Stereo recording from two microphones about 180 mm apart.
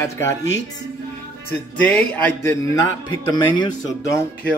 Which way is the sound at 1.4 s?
10° left (ahead or behind).